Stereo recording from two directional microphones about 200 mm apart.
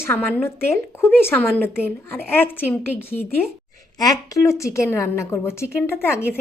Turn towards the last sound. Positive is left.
turn(degrees=10)  # may be behind; listen again after turning